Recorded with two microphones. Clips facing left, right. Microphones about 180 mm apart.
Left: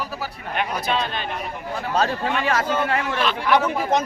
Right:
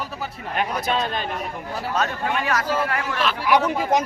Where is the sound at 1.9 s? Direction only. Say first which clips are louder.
Left 2 dB; 30° left (ahead or behind).